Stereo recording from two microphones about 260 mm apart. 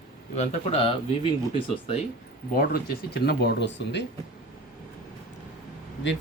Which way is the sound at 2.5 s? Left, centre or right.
Left.